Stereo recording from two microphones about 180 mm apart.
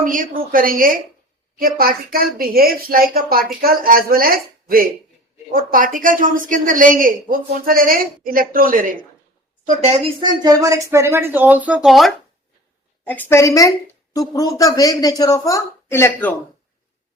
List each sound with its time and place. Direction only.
0.0 s a woman's voice: 50° right (ahead or behind)
10.2 s speech: 20° right (ahead or behind); by 12.1 s centre (ahead or behind)
13.1 s a woman's voice: 10° left (ahead or behind)